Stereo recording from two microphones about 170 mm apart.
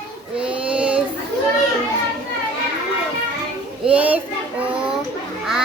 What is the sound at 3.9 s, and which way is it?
Speech, 10° right (ahead or behind).